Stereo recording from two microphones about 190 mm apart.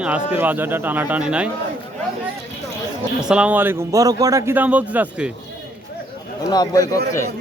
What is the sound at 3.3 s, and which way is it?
Speech, 5° right (ahead or behind).